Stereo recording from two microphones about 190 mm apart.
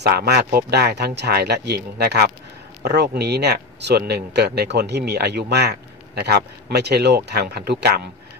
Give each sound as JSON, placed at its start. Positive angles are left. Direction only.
{"t": 0.0, "sound": "speech", "side_deg": -60}